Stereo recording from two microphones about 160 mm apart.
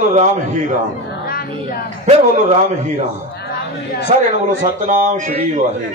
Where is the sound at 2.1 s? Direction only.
50° right (ahead or behind).